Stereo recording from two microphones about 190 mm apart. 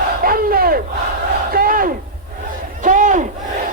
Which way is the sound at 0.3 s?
50° right (ahead or behind).